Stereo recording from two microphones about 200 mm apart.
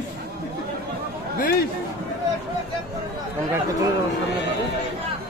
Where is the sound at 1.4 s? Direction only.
50° left (ahead or behind).